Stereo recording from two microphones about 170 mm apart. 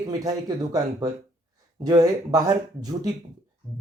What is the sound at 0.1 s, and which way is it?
Speech, 20° right (ahead or behind).